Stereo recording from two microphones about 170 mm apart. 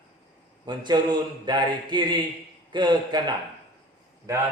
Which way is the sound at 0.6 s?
25° right (ahead or behind).